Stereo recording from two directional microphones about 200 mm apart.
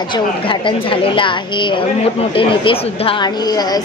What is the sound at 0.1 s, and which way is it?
A woman's voice, 25° left (ahead or behind).